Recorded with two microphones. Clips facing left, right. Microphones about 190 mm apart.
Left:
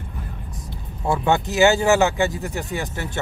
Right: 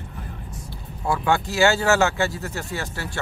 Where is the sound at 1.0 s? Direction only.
25° left (ahead or behind).